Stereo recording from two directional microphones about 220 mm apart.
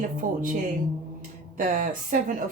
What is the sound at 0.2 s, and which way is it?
Speech, 35° right (ahead or behind).